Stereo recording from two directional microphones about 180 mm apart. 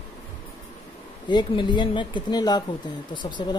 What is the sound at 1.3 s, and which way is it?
Speech, 25° left (ahead or behind).